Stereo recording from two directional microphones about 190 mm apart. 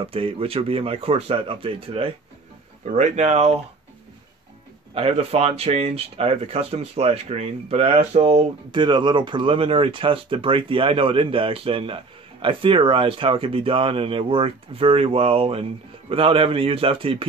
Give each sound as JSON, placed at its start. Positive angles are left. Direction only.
{"t": 0.0, "sound": "speech", "side_deg": -30}
{"t": 4.9, "sound": "speech", "side_deg": -30}